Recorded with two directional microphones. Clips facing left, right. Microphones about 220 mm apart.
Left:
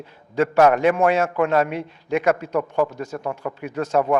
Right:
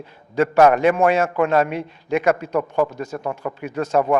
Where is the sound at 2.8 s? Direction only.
25° right (ahead or behind).